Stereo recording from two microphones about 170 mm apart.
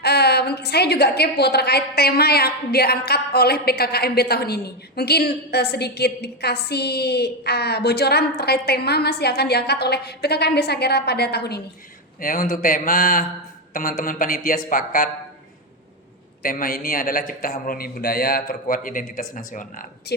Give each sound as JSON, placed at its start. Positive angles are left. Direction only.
{"t": 0.0, "sound": "a woman's voice", "side_deg": 75}
{"t": 12.2, "sound": "a man's voice", "side_deg": 55}
{"t": 16.4, "sound": "a man's voice", "side_deg": 60}